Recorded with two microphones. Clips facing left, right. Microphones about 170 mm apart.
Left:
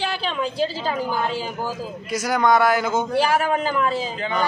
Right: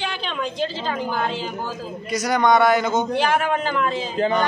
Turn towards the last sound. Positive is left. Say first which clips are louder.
# left 1 dB
turn(degrees=5)  # may be behind; listen again after turning